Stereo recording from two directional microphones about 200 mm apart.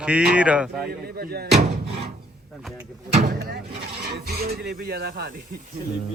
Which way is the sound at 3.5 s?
55° right (ahead or behind).